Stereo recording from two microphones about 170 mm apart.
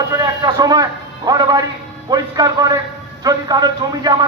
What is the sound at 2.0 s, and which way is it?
A man's voice, 25° right (ahead or behind).